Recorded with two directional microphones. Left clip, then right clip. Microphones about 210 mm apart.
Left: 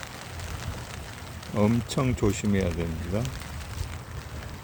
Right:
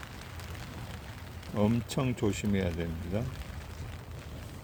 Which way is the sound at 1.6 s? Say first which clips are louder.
Left 5 dB; 5° right (ahead or behind).